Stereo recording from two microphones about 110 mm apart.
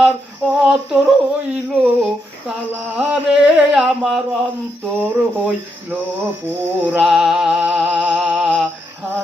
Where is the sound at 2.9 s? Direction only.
10° right (ahead or behind).